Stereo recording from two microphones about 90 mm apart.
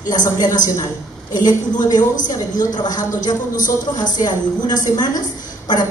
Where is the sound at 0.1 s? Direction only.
50° left (ahead or behind).